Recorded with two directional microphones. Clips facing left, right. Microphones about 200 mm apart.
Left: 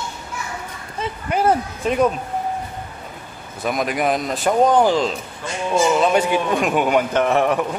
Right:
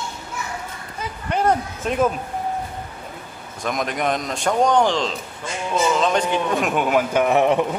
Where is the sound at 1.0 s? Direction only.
30° left (ahead or behind).